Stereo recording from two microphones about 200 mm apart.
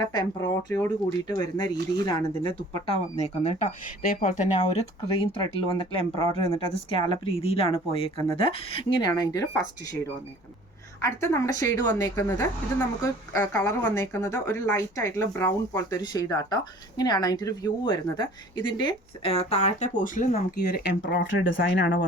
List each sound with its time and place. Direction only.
0.0 s a woman's voice: 20° left (ahead or behind); by 21.9 s 60° left (ahead or behind)